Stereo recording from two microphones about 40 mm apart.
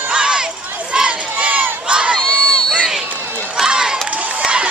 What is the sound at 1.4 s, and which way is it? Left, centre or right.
Crowd, right.